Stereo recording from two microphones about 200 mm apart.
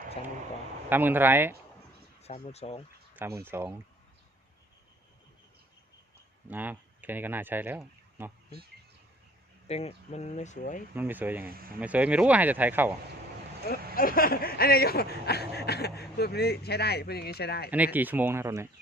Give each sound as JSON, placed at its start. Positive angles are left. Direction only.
{"t": 0.9, "sound": "speech", "side_deg": -10}
{"t": 2.2, "sound": "speech", "side_deg": 30}
{"t": 3.2, "sound": "speech", "side_deg": -10}
{"t": 6.5, "sound": "speech", "side_deg": -10}
{"t": 9.6, "sound": "speech", "side_deg": 30}
{"t": 10.9, "sound": "speech", "side_deg": -10}
{"t": 11.5, "sound": "speech", "side_deg": -45}
{"t": 11.8, "sound": "speech", "side_deg": -5}
{"t": 13.9, "sound": "speech", "side_deg": 45}
{"t": 17.7, "sound": "speech", "side_deg": -10}